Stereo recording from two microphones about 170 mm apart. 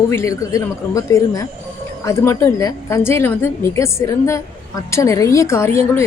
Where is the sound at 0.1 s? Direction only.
20° left (ahead or behind).